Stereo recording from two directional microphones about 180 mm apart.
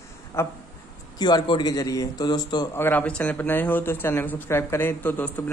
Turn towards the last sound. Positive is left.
turn(degrees=10)  # may be behind; listen again after turning